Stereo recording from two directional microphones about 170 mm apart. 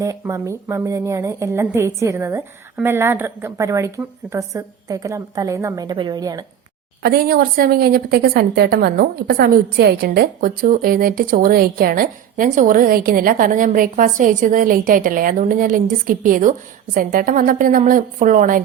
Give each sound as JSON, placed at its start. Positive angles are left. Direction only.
{"t": 0.0, "sound": "a woman's voice", "side_deg": -20}
{"t": 7.0, "sound": "a woman's voice", "side_deg": -60}